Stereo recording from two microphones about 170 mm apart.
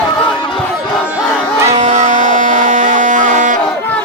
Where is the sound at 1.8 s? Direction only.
45° right (ahead or behind).